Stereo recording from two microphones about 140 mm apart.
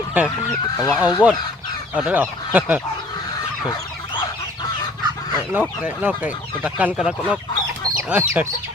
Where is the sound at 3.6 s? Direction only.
30° left (ahead or behind).